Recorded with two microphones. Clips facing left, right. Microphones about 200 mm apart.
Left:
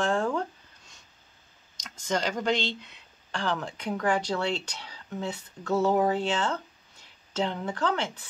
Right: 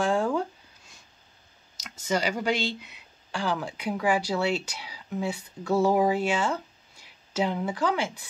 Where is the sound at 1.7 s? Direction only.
5° right (ahead or behind).